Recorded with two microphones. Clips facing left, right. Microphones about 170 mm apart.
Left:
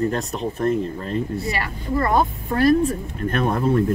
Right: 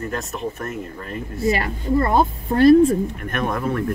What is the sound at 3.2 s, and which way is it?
Speech, 30° left (ahead or behind).